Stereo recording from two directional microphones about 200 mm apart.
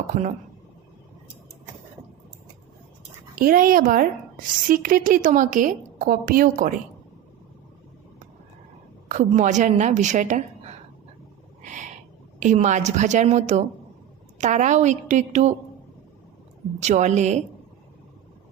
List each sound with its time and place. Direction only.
0.1 s a woman's voice: 35° right (ahead or behind)
3.3 s a woman's voice: 45° right (ahead or behind)
9.0 s a woman's voice: 35° right (ahead or behind)
11.6 s owl: 40° right (ahead or behind)
12.4 s a woman's voice: 35° right (ahead or behind)
16.8 s a woman's voice: 35° right (ahead or behind)